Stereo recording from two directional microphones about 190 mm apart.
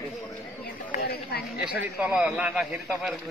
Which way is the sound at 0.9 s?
55° left (ahead or behind).